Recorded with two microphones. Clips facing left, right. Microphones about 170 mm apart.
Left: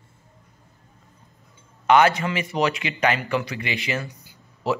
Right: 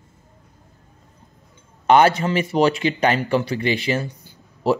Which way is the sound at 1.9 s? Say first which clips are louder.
Right 3 dB; 35° right (ahead or behind).